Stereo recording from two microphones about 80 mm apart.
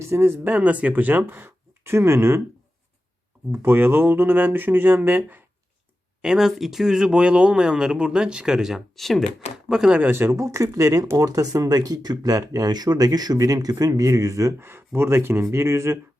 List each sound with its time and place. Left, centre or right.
0.0 s speech: right
3.5 s speech: right
6.2 s speech: centre
9.6 s speech: centre
10.0 s speech: right